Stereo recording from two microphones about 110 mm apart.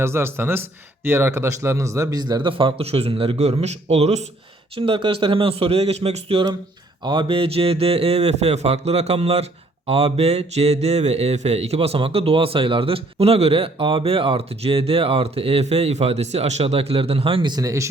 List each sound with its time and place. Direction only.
0.0 s speech: 25° right (ahead or behind); by 4.2 s 75° right (ahead or behind)
4.8 s a man's voice: 50° right (ahead or behind)
7.0 s a man's voice: 45° right (ahead or behind)
17.6 s speech: 30° right (ahead or behind)